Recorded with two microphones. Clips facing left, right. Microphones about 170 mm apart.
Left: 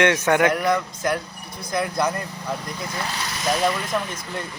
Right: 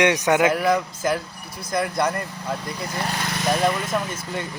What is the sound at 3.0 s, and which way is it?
Speech, 55° right (ahead or behind).